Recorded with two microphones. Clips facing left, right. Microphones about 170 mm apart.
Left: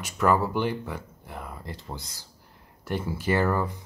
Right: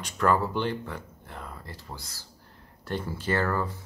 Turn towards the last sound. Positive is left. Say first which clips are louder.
# left 3 dB
turn(degrees=10)  # may be behind; listen again after turning